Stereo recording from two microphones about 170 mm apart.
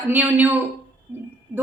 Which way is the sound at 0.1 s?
10° right (ahead or behind).